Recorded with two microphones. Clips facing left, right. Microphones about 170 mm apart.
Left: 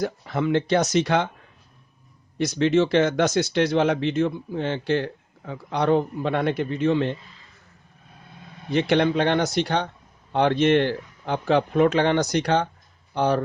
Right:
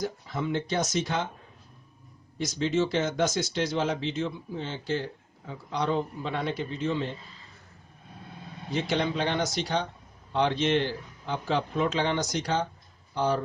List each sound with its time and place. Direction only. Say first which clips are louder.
0.0 s speech: left 6 dB; 70° left (ahead or behind)
2.4 s speech: left 7 dB; 65° left (ahead or behind)
8.7 s speech: left 8 dB; 65° left (ahead or behind)